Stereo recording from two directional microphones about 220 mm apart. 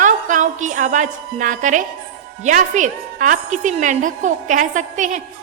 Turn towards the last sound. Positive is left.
turn(degrees=-35)  # may be behind; listen again after turning